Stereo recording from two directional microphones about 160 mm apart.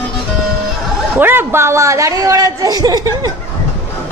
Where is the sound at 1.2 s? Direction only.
15° right (ahead or behind).